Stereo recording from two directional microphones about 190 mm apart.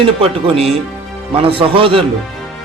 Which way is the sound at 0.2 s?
30° right (ahead or behind).